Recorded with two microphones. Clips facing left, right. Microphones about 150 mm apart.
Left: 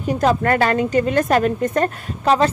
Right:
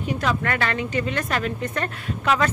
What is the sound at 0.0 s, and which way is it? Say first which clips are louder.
A woman's voice: left 7 dB; 40° left (ahead or behind).